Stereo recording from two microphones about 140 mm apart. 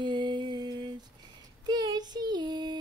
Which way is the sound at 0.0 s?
35° right (ahead or behind).